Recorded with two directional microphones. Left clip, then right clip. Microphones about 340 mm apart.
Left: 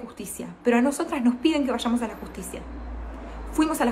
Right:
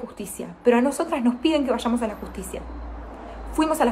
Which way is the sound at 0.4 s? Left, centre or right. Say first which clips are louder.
Right 3 dB; centre.